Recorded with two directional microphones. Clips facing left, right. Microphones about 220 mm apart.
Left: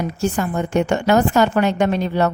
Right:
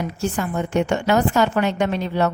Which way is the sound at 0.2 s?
40° left (ahead or behind).